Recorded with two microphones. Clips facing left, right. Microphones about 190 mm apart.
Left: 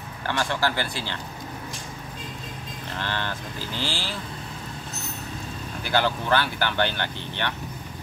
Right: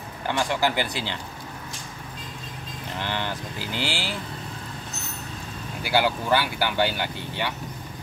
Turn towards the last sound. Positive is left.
turn(degrees=-10)  # may be behind; listen again after turning